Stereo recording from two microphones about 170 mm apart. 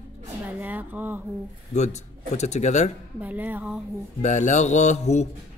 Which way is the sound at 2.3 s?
40° left (ahead or behind).